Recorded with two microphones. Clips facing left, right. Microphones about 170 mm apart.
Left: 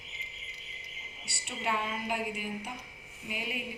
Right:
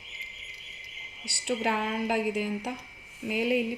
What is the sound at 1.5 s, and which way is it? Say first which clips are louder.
A woman's voice: right 6 dB; 90° right.